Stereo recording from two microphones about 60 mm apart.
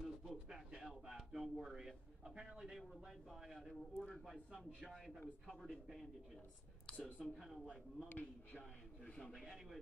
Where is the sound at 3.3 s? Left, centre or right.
Centre.